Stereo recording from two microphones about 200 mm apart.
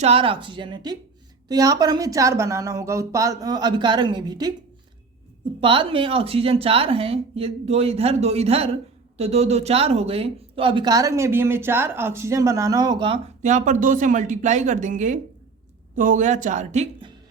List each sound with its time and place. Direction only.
0.0 s a woman's voice: 30° right (ahead or behind)
5.5 s speech: 25° right (ahead or behind)
13.4 s speech: 40° right (ahead or behind)